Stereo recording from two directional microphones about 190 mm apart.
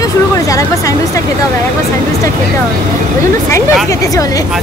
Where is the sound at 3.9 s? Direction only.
20° left (ahead or behind).